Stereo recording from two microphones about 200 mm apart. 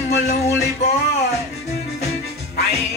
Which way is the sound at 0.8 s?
35° left (ahead or behind).